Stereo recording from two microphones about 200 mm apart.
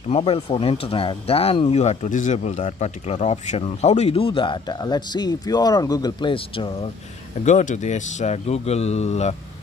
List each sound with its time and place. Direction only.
0.1 s speech: 30° left (ahead or behind)
7.4 s speech: 35° left (ahead or behind)